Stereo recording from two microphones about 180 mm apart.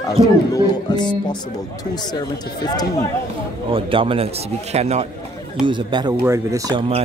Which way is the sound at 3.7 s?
30° right (ahead or behind).